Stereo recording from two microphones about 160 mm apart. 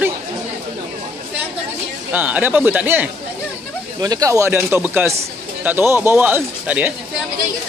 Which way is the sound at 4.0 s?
20° right (ahead or behind).